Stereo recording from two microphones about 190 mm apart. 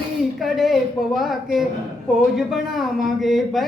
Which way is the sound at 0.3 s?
Centre (ahead or behind).